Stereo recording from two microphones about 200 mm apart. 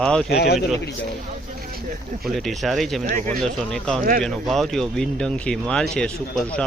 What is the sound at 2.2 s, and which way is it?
Speech, centre (ahead or behind).